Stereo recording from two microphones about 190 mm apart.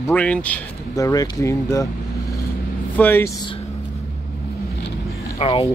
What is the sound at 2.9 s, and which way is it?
Speech, 10° left (ahead or behind).